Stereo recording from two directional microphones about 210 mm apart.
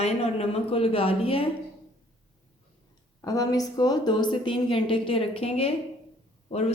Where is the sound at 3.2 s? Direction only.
15° left (ahead or behind).